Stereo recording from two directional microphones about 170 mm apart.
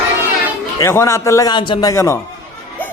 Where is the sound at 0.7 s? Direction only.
15° left (ahead or behind).